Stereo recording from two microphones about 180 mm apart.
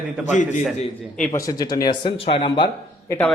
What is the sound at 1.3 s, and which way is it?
Speech, 20° left (ahead or behind).